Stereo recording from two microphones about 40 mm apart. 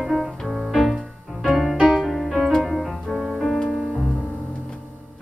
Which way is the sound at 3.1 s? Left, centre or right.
Centre.